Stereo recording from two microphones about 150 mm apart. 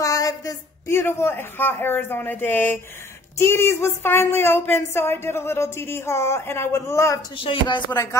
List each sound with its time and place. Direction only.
0.0 s speech: 20° left (ahead or behind)
7.3 s speech: 35° left (ahead or behind)